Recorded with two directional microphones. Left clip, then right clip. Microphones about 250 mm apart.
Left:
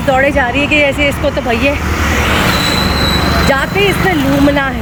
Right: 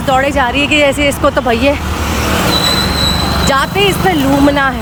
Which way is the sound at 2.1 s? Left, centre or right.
Right.